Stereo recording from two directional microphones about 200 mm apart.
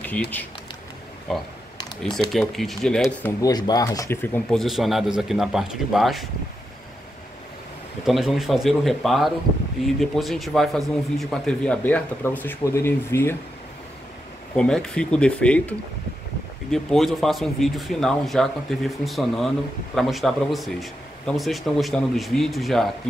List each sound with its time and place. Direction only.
0.0 s speech: 10° left (ahead or behind)
4.6 s speech: centre (ahead or behind)
8.1 s speech: centre (ahead or behind)
14.5 s speech: 5° left (ahead or behind)
16.7 s speech: centre (ahead or behind)